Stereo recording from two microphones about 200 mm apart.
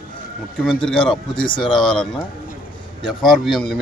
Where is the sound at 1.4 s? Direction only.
25° left (ahead or behind).